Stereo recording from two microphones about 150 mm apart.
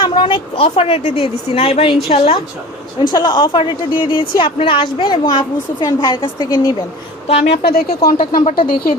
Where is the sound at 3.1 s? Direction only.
30° left (ahead or behind).